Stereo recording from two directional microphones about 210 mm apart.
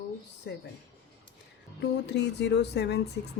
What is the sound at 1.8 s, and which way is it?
Speech, 55° left (ahead or behind).